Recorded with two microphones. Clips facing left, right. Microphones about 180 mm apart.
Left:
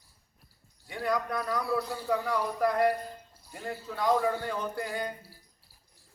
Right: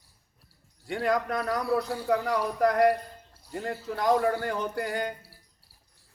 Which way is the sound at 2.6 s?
80° right.